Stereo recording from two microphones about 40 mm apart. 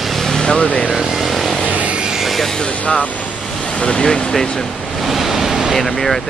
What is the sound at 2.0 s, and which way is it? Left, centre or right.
Vehicle, centre.